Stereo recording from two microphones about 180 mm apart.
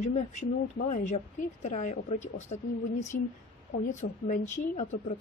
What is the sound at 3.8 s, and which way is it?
Speech, 45° left (ahead or behind).